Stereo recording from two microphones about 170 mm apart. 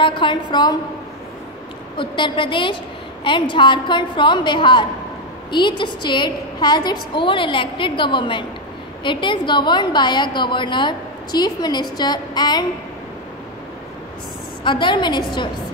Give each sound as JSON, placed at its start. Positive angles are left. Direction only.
{"t": 0.0, "sound": "a woman's voice", "side_deg": 30}
{"t": 2.0, "sound": "a woman's voice", "side_deg": 30}
{"t": 14.6, "sound": "a woman's voice", "side_deg": 30}